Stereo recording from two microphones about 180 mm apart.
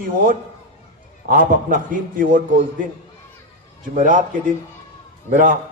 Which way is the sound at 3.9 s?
45° right (ahead or behind).